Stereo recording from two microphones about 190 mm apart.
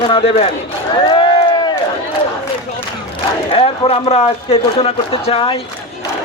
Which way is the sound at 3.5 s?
30° left (ahead or behind).